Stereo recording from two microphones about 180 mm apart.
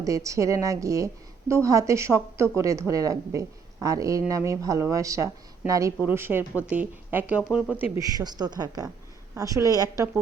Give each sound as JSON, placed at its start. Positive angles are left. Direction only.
{"t": 0.0, "sound": "a woman's voice", "side_deg": -20}
{"t": 7.9, "sound": "speech", "side_deg": -20}